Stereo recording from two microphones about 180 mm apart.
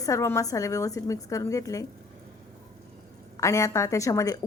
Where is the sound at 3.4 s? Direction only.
15° left (ahead or behind).